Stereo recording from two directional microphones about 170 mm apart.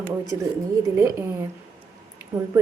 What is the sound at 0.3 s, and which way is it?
Speech, 20° right (ahead or behind).